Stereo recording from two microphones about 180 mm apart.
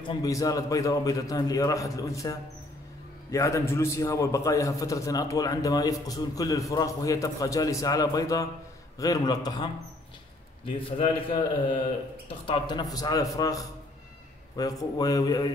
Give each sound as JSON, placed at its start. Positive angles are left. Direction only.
{"t": 0.0, "sound": "a man's voice", "side_deg": 20}
{"t": 10.8, "sound": "a man's voice", "side_deg": 30}